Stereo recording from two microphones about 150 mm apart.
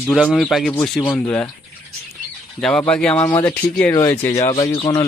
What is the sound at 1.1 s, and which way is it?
Speech, 15° left (ahead or behind).